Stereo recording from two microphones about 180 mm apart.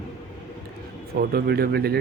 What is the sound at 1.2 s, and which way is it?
Speech, 60° right (ahead or behind).